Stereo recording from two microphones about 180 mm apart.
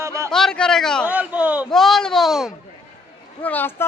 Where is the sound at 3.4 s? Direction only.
10° left (ahead or behind).